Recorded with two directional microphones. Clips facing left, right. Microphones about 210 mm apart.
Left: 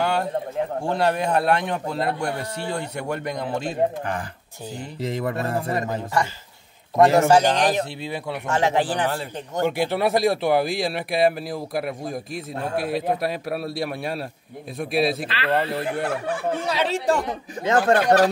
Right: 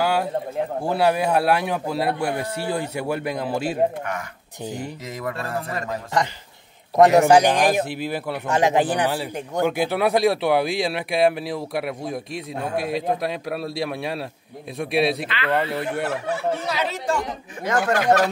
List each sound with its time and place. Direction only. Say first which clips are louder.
0.0 s a sound: right 1 dB; 5° right (ahead or behind)
0.7 s a man's voice: right 3 dB; 5° right (ahead or behind)
5.0 s a man's voice: left 4 dB; 30° left (ahead or behind)
7.0 s a man's voice: right 2 dB; 15° right (ahead or behind)
9.7 s speech: even; centre (ahead or behind)
15.2 s speech: even; 30° left (ahead or behind)
16.6 s a man's voice: left 3 dB; 30° left (ahead or behind)